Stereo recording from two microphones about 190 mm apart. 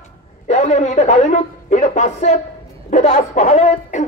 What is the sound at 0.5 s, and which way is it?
A woman's voice, 35° left (ahead or behind).